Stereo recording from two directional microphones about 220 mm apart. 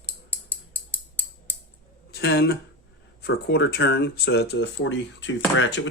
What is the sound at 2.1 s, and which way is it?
Speech, 45° left (ahead or behind).